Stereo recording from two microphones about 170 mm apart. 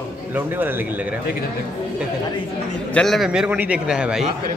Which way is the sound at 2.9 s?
Centre (ahead or behind).